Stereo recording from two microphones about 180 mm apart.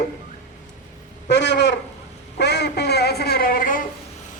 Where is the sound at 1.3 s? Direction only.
75° left (ahead or behind); by 3.8 s 50° left (ahead or behind).